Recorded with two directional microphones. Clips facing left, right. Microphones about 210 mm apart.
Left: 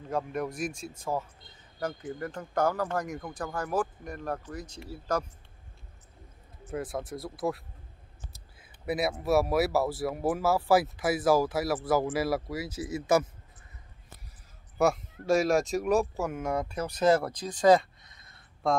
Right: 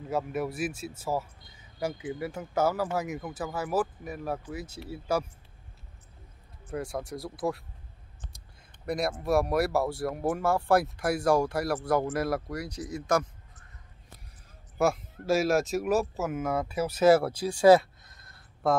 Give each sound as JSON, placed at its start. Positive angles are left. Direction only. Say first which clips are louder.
{"t": 0.1, "sound": "speech", "louder": "right 1 dB", "side_deg": -5}
{"t": 6.7, "sound": "speech", "louder": "even", "side_deg": 0}
{"t": 14.8, "sound": "speech", "louder": "left 1 dB", "side_deg": 0}